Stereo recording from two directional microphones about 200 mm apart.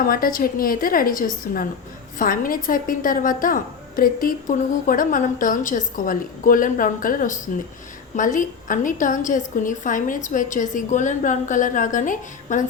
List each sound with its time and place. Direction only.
0.1 s a woman's voice: 45° left (ahead or behind)